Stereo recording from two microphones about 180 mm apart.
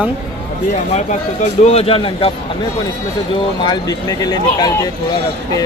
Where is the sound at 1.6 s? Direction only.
35° left (ahead or behind).